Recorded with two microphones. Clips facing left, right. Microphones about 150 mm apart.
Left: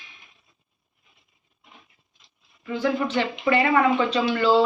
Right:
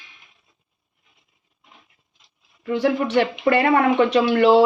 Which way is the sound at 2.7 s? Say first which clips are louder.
Right 4 dB; 65° right (ahead or behind).